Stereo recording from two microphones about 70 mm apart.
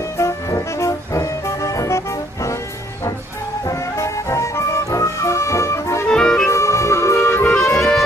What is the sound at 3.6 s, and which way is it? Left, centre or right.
Music, left.